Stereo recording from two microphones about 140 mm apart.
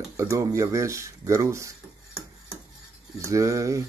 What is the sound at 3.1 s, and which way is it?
Speech, 20° right (ahead or behind).